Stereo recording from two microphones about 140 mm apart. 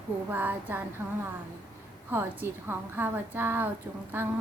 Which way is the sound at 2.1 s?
15° right (ahead or behind).